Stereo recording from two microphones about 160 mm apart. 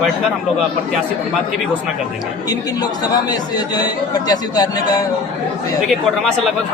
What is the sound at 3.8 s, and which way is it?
Speech, 25° left (ahead or behind).